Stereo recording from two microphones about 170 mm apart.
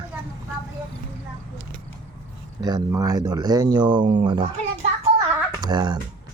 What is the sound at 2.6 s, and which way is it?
Speech, 25° right (ahead or behind).